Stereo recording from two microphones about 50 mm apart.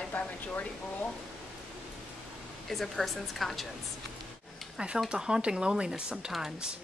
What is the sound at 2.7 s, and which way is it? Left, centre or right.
Speech, centre.